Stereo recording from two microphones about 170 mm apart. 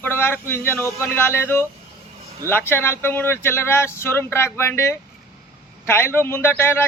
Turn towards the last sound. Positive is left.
turn(degrees=15)  # may be behind; listen again after turning